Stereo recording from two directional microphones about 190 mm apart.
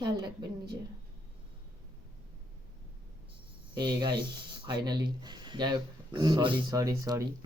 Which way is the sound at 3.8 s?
25° right (ahead or behind).